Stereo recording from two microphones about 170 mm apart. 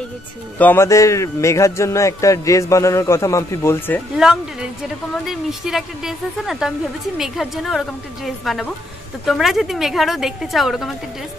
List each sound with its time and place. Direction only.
0.6 s a man's voice: 15° left (ahead or behind)
4.2 s a woman's voice: 5° right (ahead or behind)